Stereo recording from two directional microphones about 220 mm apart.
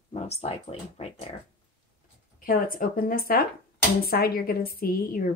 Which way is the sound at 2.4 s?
40° left (ahead or behind).